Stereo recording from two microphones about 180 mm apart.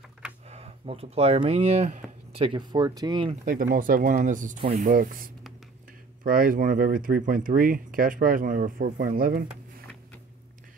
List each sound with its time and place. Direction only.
0.5 s speech: 35° right (ahead or behind)
3.4 s speech: 50° right (ahead or behind)
4.6 s speech: 30° right (ahead or behind)
4.8 s speech: 50° right (ahead or behind)